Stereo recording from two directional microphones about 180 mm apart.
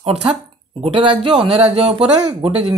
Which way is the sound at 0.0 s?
30° right (ahead or behind).